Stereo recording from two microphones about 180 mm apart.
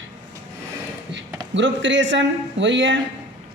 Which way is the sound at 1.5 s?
90° right.